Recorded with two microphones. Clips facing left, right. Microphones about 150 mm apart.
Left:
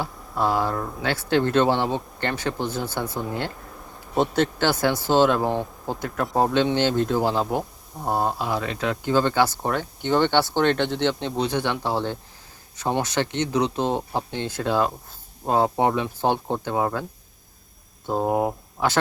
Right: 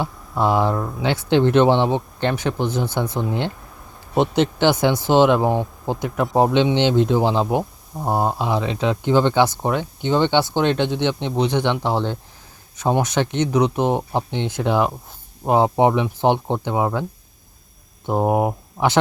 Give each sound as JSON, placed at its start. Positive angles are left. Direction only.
{"t": 0.0, "sound": "speech", "side_deg": -20}